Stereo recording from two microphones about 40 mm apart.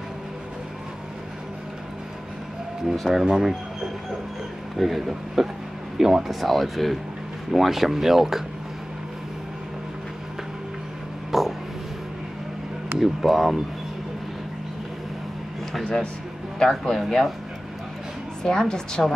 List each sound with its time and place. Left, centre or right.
2.9 s speech: centre
4.7 s speech: centre
11.3 s vehicle: centre
13.0 s speech: centre
15.8 s a woman's voice: left
18.4 s a woman's voice: centre